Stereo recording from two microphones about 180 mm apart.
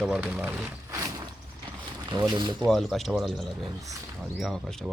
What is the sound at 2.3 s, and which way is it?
Speech, 25° right (ahead or behind).